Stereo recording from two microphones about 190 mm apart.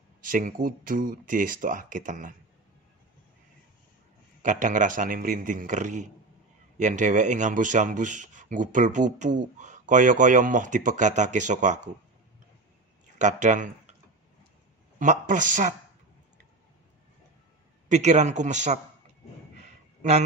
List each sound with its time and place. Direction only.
0.2 s speech: 45° right (ahead or behind)
4.4 s speech: 40° right (ahead or behind)
13.2 s speech: 40° right (ahead or behind)
15.0 s speech: 40° right (ahead or behind)
17.8 s speech: 40° right (ahead or behind)
20.0 s a man's voice: 35° right (ahead or behind)